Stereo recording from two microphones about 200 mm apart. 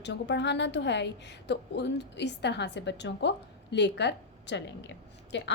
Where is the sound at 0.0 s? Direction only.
60° left (ahead or behind).